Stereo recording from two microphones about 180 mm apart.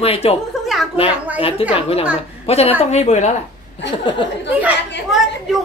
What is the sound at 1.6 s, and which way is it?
Speech, 30° left (ahead or behind).